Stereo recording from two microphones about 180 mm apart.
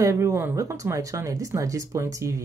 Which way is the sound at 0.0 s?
15° right (ahead or behind).